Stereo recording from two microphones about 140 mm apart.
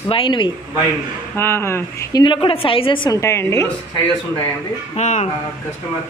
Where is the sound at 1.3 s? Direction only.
15° left (ahead or behind).